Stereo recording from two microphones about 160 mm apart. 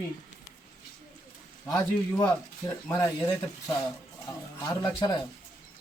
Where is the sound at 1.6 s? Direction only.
15° left (ahead or behind).